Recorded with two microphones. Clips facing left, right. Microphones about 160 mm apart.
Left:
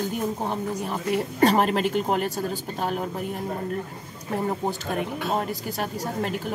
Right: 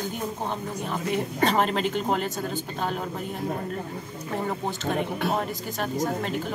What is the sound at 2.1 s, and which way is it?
Speech, 40° left (ahead or behind).